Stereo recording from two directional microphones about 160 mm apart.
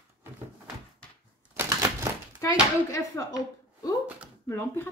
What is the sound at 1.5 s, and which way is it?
Typewriter, 20° right (ahead or behind).